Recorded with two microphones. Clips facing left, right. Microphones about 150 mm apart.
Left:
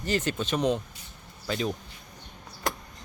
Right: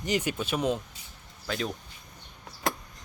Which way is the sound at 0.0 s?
15° right (ahead or behind).